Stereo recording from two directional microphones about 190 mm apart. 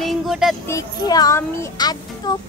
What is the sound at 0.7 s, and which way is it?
Speech, 20° left (ahead or behind).